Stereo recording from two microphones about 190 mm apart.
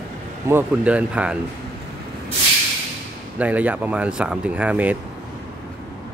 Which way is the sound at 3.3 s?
10° right (ahead or behind).